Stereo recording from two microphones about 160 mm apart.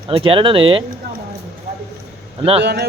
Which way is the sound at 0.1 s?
35° right (ahead or behind).